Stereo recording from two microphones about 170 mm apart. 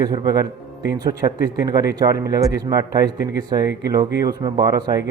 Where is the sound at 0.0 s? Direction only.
20° right (ahead or behind).